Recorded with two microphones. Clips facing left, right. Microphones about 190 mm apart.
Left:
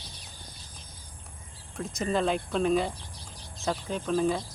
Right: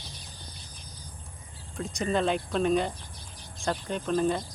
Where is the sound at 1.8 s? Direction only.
Centre (ahead or behind).